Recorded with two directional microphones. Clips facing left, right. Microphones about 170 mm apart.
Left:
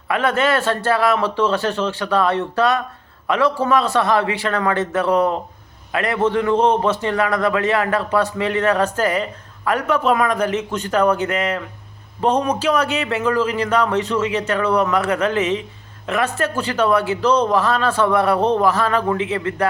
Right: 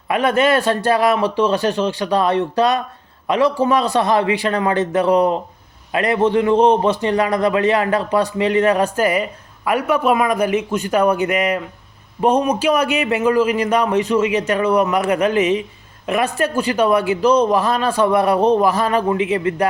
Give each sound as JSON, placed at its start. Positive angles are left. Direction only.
{"t": 0.1, "sound": "a man's voice", "side_deg": -15}